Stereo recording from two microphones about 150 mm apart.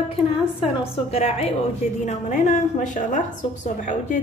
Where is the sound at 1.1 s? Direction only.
45° left (ahead or behind).